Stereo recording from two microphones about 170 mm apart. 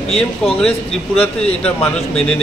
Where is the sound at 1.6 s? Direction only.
5° left (ahead or behind).